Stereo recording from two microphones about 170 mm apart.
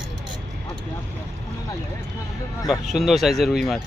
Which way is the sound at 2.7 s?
Centre (ahead or behind).